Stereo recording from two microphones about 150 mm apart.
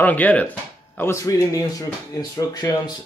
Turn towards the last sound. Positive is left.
turn(degrees=25)  # may be behind; listen again after turning